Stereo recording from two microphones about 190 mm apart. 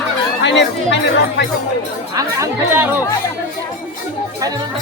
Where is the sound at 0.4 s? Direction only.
65° left (ahead or behind).